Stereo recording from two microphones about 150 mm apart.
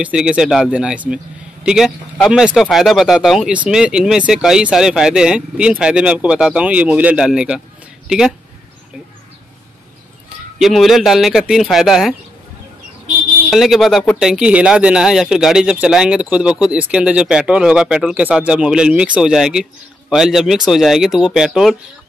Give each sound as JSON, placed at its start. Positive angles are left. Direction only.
{"t": 0.0, "sound": "a man's voice", "side_deg": -5}
{"t": 10.6, "sound": "speech", "side_deg": 0}
{"t": 13.5, "sound": "speech", "side_deg": 0}